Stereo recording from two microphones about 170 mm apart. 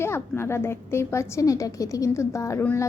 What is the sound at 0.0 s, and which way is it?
A woman's voice, 15° left (ahead or behind).